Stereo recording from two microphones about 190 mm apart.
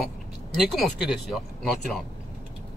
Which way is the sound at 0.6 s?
Centre (ahead or behind).